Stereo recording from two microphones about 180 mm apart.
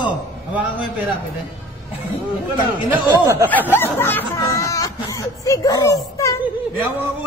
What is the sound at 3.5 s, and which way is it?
Speech, 10° left (ahead or behind).